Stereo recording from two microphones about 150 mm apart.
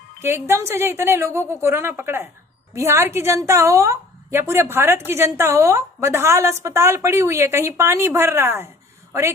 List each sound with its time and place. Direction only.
0.2 s a woman's voice: 15° right (ahead or behind)